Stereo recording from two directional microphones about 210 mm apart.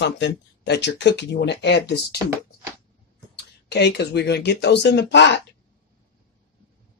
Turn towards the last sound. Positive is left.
turn(degrees=55)  # may be behind; listen again after turning